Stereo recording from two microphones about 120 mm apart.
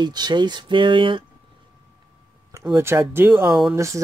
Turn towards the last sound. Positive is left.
turn(degrees=-25)  # may be behind; listen again after turning